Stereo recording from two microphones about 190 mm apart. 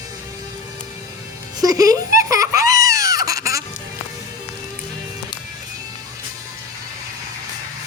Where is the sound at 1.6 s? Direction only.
20° right (ahead or behind).